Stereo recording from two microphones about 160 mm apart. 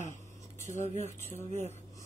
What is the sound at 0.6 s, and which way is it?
Speech, 45° right (ahead or behind).